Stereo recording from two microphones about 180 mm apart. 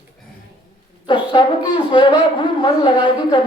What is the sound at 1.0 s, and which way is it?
A woman's voice, 25° left (ahead or behind).